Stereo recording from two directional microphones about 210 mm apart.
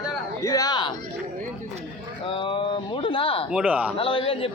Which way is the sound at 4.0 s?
25° left (ahead or behind).